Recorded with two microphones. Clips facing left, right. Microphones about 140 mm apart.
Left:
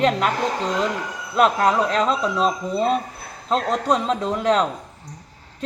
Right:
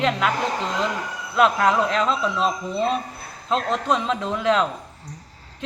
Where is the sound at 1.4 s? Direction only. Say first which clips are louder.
Left 1 dB; 40° left (ahead or behind).